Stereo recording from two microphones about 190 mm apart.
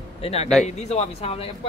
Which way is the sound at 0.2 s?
35° left (ahead or behind).